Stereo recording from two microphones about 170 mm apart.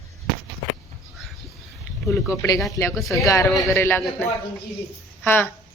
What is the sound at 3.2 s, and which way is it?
Speech, 20° left (ahead or behind).